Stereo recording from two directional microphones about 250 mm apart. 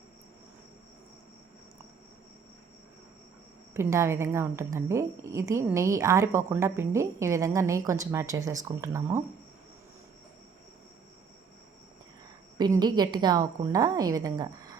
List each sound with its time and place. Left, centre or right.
3.8 s a woman's voice: centre
12.5 s a woman's voice: centre